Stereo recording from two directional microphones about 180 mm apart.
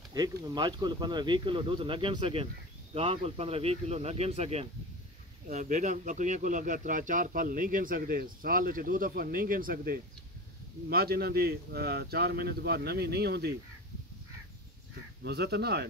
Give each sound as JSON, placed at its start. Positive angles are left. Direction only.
{"t": 0.1, "sound": "speech", "side_deg": -20}
{"t": 15.2, "sound": "speech", "side_deg": -65}